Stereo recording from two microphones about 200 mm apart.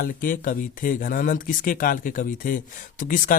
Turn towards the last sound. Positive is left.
turn(degrees=40)  # may be behind; listen again after turning